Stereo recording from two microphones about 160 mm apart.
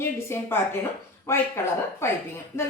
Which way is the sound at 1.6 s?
15° left (ahead or behind).